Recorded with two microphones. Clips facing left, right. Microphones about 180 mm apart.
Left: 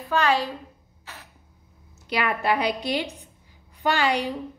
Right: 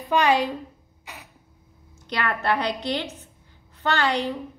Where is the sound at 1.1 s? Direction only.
15° right (ahead or behind).